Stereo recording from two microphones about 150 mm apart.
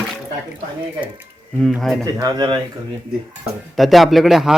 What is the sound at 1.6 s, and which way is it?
Speech, centre (ahead or behind).